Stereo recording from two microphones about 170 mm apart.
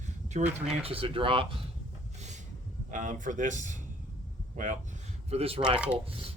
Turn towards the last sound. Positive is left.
turn(degrees=-35)  # may be behind; listen again after turning